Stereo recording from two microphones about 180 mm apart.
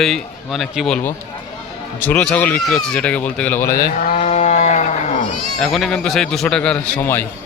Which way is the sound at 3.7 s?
50° left (ahead or behind).